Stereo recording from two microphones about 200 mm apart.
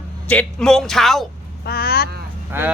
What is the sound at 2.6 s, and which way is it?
Speech, 10° right (ahead or behind).